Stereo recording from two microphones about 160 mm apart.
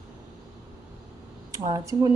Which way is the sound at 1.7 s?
25° right (ahead or behind).